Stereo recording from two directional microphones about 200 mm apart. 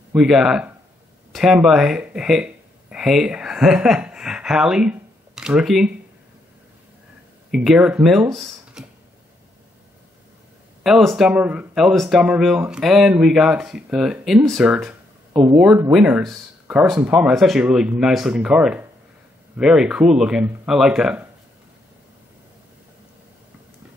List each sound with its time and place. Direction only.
0.1 s speech: 5° right (ahead or behind)
7.5 s speech: 5° right (ahead or behind)
10.8 s speech: centre (ahead or behind)
15.3 s speech: 20° right (ahead or behind)
15.6 s speech: 5° right (ahead or behind)